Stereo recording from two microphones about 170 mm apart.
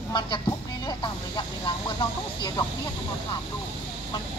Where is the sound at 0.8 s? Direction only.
25° left (ahead or behind).